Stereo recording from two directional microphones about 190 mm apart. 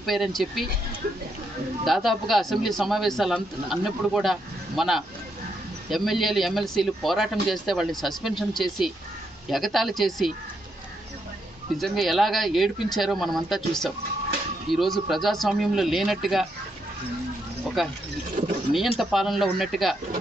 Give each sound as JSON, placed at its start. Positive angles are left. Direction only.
{"t": 0.0, "sound": "a man's voice", "side_deg": 0}
{"t": 1.9, "sound": "a man's voice", "side_deg": 0}
{"t": 11.8, "sound": "a man's voice", "side_deg": 0}
{"t": 17.8, "sound": "a man's voice", "side_deg": 0}
{"t": 18.4, "sound": "a sound", "side_deg": -40}
{"t": 18.7, "sound": "a man's voice", "side_deg": 0}